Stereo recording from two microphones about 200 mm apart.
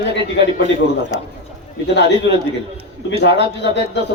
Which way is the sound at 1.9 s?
60° left (ahead or behind).